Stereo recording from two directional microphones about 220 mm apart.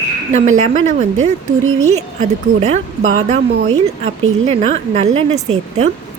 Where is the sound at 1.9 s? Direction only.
30° right (ahead or behind).